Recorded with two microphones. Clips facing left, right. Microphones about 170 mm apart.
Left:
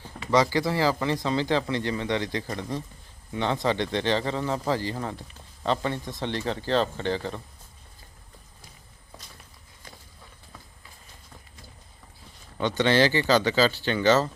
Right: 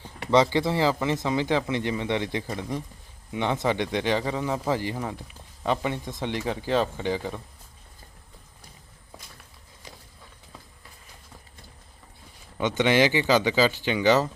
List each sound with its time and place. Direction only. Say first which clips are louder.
0.5 s speech: right 1 dB; 25° right (ahead or behind)
12.5 s speech: even; 15° right (ahead or behind)